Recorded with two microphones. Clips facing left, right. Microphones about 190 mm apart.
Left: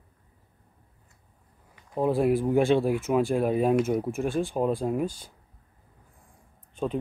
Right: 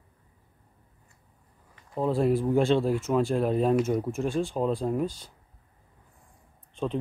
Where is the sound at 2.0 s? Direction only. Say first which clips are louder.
Left 1 dB; 15° left (ahead or behind).